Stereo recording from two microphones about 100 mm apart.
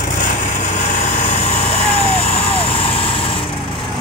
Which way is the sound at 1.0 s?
90° left.